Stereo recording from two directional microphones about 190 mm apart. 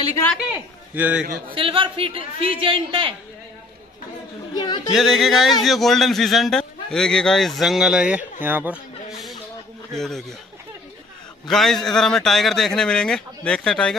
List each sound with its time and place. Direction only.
0.9 s a man's voice: 10° right (ahead or behind)
1.5 s a man's voice: 25° right (ahead or behind)
4.6 s speech: 25° left (ahead or behind)
4.9 s speech: centre (ahead or behind)
9.9 s speech: centre (ahead or behind)
11.4 s speech: centre (ahead or behind)